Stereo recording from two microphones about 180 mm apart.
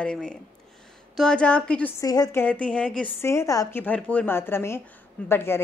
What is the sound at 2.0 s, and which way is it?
Speech, 20° left (ahead or behind).